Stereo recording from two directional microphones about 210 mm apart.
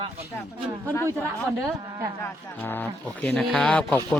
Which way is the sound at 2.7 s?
10° left (ahead or behind).